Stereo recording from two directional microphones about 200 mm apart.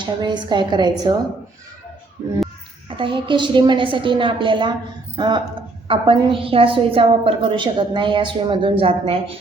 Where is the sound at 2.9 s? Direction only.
25° right (ahead or behind).